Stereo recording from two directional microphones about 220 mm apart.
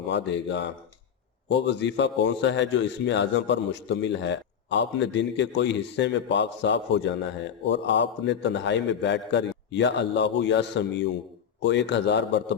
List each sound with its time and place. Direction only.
0.1 s a man's voice: 55° left (ahead or behind)